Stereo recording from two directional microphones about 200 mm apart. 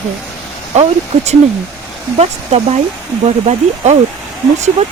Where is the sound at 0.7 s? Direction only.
35° right (ahead or behind).